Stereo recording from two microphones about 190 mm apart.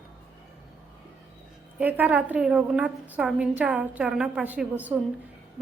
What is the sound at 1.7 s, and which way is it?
A woman's voice, 10° right (ahead or behind).